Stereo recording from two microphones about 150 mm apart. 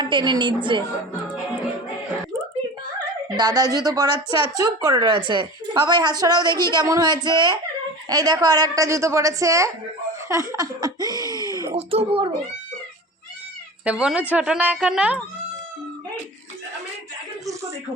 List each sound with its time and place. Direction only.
0.0 s a woman's voice: 30° right (ahead or behind)
3.3 s speech: 25° right (ahead or behind)
11.3 s a sound: 25° left (ahead or behind)
11.8 s a woman's voice: 40° right (ahead or behind)
13.8 s a woman's voice: 5° right (ahead or behind)